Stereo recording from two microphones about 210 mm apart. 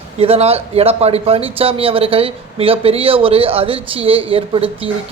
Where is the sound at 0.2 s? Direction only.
30° right (ahead or behind).